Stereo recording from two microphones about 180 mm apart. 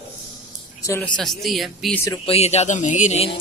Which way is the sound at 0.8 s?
20° left (ahead or behind).